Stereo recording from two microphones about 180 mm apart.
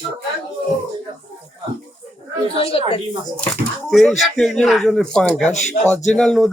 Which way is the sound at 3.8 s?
Centre (ahead or behind).